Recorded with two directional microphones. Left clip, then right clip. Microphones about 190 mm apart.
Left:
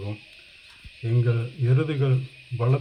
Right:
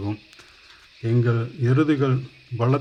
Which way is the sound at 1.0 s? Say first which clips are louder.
Right 5 dB; 30° right (ahead or behind).